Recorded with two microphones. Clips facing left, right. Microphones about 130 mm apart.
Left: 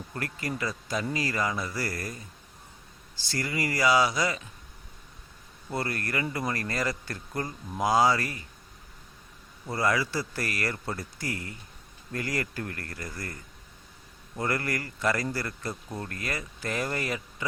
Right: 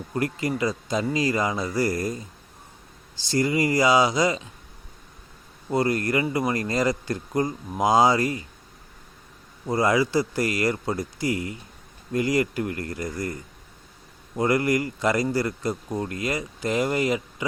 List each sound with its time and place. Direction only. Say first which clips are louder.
0.1 s speech: right 9 dB; 20° right (ahead or behind)
3.2 s speech: right 9 dB; 20° right (ahead or behind)
5.6 s speech: right 9 dB; 20° right (ahead or behind)
9.6 s speech: right 6 dB; 20° right (ahead or behind)